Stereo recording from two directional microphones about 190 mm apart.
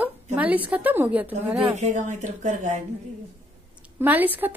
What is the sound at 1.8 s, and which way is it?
Speech, 40° right (ahead or behind).